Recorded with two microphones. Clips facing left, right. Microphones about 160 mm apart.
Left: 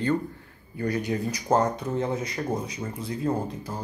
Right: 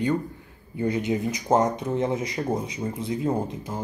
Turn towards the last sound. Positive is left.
turn(degrees=-20)  # may be behind; listen again after turning